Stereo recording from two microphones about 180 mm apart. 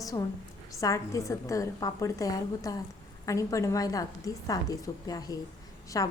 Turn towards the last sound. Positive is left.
turn(degrees=20)  # may be behind; listen again after turning